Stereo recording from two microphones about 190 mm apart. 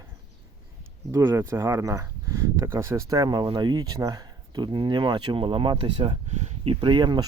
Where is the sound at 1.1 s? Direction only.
15° right (ahead or behind); by 6.7 s 35° right (ahead or behind).